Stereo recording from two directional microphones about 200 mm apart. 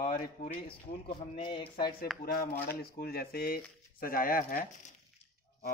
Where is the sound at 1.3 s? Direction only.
25° left (ahead or behind).